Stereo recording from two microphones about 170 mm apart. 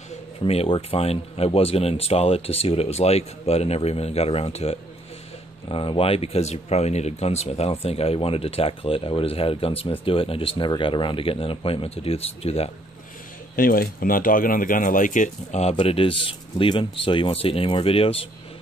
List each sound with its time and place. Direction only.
0.4 s speech: 35° left (ahead or behind)
13.6 s speech: 60° left (ahead or behind)
15.7 s speech: 30° left (ahead or behind)